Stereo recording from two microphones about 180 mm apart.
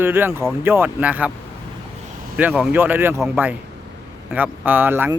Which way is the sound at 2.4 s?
10° right (ahead or behind).